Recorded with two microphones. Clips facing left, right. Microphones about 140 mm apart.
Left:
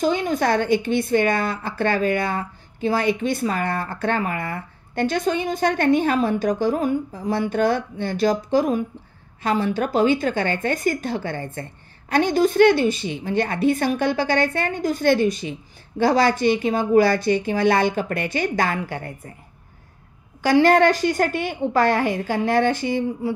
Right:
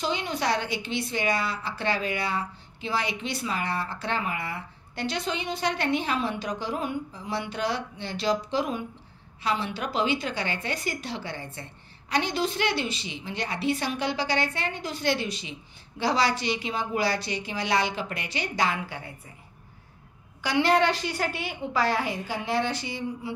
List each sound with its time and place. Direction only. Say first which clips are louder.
0.0 s a woman's voice: left 8 dB; 50° left (ahead or behind)
20.4 s a woman's voice: left 7 dB; 45° left (ahead or behind)